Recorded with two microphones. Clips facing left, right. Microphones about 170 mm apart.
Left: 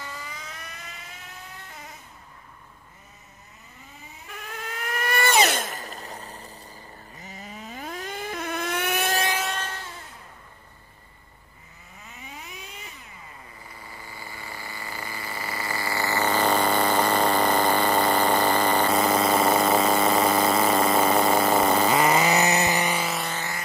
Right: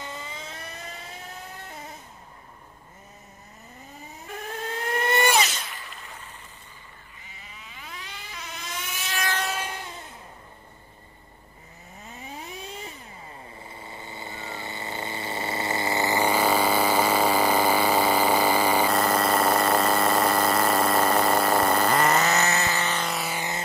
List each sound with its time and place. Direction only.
0.0 s vehicle: 25° right (ahead or behind)
4.5 s vehicle: 30° right (ahead or behind)
5.4 s a sound: 55° left (ahead or behind); by 6.5 s 35° left (ahead or behind)
7.2 s vehicle: 40° left (ahead or behind); by 9.1 s 60° left (ahead or behind)
9.4 s train: 5° right (ahead or behind)
9.7 s vehicle: 15° right (ahead or behind)
12.3 s vehicle: 30° right (ahead or behind); by 23.3 s centre (ahead or behind)
23.3 s music: 20° right (ahead or behind)